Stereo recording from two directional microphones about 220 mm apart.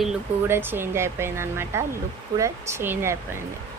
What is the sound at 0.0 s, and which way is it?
Speech, 10° right (ahead or behind).